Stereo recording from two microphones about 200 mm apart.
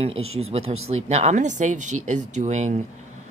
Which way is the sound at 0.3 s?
30° right (ahead or behind).